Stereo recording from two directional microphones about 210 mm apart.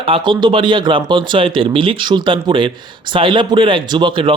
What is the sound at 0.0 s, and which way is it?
A man's voice, 25° right (ahead or behind).